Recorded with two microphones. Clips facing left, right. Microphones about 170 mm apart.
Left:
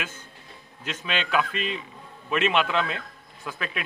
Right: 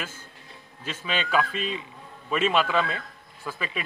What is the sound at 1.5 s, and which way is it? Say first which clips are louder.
Speech: even; 70° left (ahead or behind).